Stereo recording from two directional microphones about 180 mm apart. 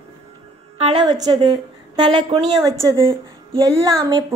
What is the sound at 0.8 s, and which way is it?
A woman's voice, 25° right (ahead or behind).